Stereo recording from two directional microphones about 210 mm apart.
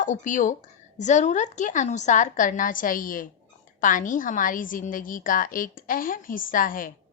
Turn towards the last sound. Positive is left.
turn(degrees=40)  # may be behind; listen again after turning